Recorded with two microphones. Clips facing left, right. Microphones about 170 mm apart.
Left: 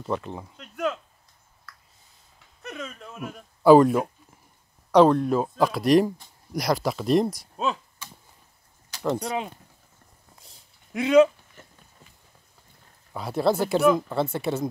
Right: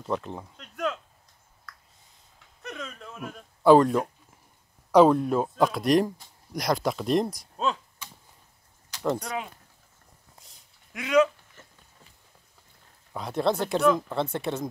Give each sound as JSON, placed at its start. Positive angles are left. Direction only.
{"t": 0.0, "sound": "a sound", "side_deg": 0}
{"t": 4.9, "sound": "speech", "side_deg": -5}
{"t": 9.2, "sound": "speech", "side_deg": 25}
{"t": 10.9, "sound": "speech", "side_deg": 30}
{"t": 13.1, "sound": "speech", "side_deg": 5}